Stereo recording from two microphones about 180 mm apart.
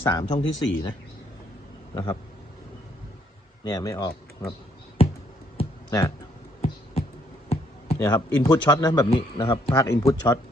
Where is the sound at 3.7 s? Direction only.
20° left (ahead or behind).